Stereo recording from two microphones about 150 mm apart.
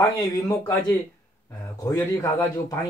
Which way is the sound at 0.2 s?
25° left (ahead or behind).